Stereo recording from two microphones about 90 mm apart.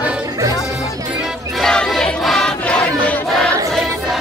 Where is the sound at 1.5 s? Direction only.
5° left (ahead or behind).